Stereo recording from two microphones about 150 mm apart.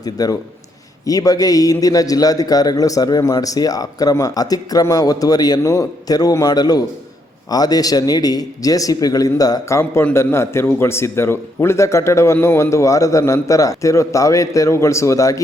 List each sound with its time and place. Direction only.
0.0 s a man's voice: 25° left (ahead or behind)